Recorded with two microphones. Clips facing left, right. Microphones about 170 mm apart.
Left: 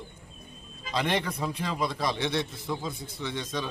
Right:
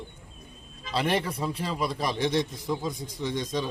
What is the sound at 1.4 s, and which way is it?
Speech, 35° right (ahead or behind).